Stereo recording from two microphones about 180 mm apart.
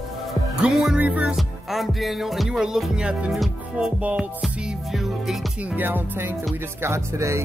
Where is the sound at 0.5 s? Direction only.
Centre (ahead or behind).